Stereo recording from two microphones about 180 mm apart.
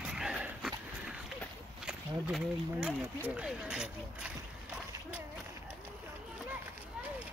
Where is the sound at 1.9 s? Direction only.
5° right (ahead or behind).